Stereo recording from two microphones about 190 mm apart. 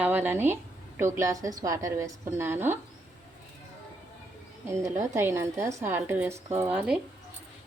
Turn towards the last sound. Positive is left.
turn(degrees=-5)  # may be behind; listen again after turning